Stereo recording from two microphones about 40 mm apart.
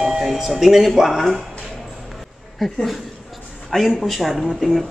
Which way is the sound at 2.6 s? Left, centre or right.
Centre.